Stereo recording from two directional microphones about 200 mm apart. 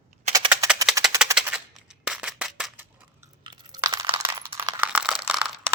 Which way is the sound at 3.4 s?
20° right (ahead or behind).